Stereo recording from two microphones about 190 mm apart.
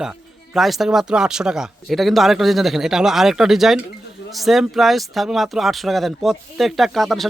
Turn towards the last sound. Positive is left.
turn(degrees=0)  # may be behind; listen again after turning